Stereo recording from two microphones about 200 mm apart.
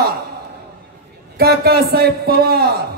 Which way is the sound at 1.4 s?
50° right (ahead or behind).